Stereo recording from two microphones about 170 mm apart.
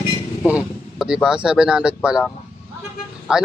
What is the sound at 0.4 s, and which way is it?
A man's voice, 5° right (ahead or behind).